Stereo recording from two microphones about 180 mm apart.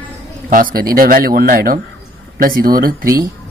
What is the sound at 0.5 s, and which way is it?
Speech, 50° right (ahead or behind).